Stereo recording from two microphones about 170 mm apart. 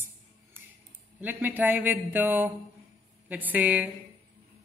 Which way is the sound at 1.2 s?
10° right (ahead or behind).